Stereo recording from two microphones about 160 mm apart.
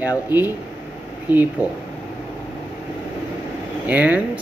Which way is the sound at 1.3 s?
10° right (ahead or behind).